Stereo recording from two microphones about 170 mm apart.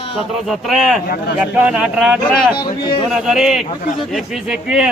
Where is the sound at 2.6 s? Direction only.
25° left (ahead or behind).